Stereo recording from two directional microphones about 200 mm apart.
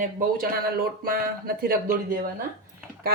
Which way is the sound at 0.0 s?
45° right (ahead or behind).